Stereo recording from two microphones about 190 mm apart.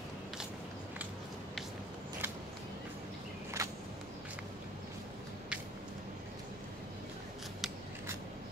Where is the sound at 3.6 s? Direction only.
15° right (ahead or behind).